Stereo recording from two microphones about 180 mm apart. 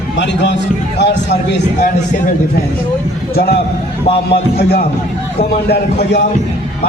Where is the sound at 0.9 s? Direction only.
70° left (ahead or behind).